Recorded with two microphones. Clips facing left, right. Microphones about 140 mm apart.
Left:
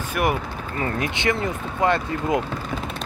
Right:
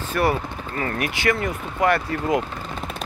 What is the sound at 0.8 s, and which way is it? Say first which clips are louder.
Speech: right 1 dB; 25° left (ahead or behind).